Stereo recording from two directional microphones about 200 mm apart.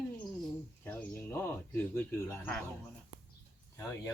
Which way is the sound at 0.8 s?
10° left (ahead or behind).